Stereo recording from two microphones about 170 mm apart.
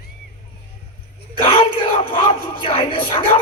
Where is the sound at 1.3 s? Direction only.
30° left (ahead or behind).